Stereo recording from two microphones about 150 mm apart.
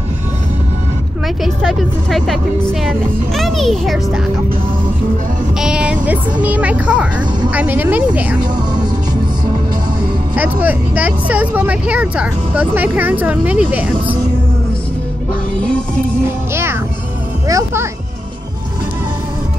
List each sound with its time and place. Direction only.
1.4 s speech: centre (ahead or behind)
5.6 s speech: 5° right (ahead or behind)
8.4 s speech: 30° right (ahead or behind)
10.3 s speech: 10° right (ahead or behind)
17.5 s speech: 20° right (ahead or behind)